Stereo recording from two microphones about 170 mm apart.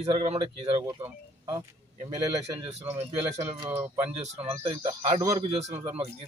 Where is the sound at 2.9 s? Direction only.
40° right (ahead or behind).